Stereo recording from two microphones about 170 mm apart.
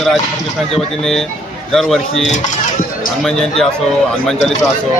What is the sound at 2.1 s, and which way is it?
Cutlery, 40° left (ahead or behind).